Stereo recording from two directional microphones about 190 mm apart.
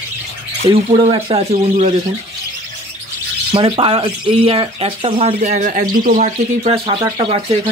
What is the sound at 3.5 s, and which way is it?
Speech, 30° right (ahead or behind).